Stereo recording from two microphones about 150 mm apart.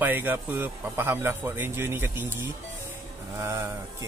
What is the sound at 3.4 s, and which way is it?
Speech, 20° right (ahead or behind).